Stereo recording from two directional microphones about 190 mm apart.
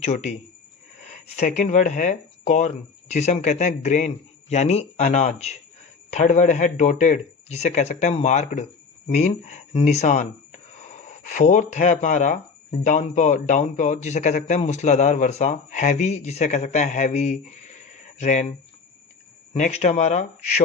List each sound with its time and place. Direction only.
0.0 s a man's voice: 35° left (ahead or behind)
19.5 s a man's voice: 35° left (ahead or behind)